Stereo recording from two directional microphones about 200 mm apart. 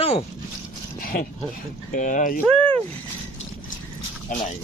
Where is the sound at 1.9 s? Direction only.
40° left (ahead or behind).